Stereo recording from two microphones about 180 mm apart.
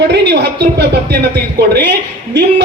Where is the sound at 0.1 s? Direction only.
70° right (ahead or behind).